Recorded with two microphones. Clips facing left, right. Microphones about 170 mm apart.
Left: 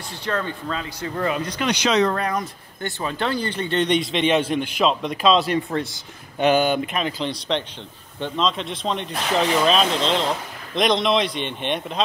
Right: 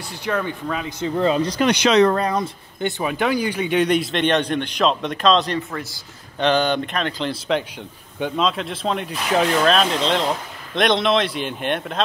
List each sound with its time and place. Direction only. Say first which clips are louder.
0.2 s speech: right 2 dB; 10° right (ahead or behind); by 1.7 s 35° right (ahead or behind)
1.7 s speech: right 4 dB; 60° right (ahead or behind)
2.1 s speech: right 3 dB; 30° right (ahead or behind)
3.0 s speech: right 3 dB; 10° right (ahead or behind)